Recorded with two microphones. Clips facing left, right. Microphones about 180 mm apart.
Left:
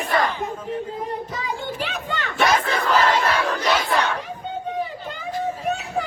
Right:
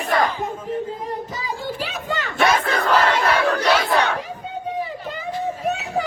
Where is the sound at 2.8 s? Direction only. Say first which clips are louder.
Right 1 dB; 65° right (ahead or behind).